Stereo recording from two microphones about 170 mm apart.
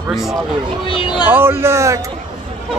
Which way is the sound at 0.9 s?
25° left (ahead or behind).